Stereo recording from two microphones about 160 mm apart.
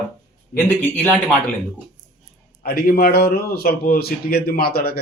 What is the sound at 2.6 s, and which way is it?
A man's voice, 70° left (ahead or behind).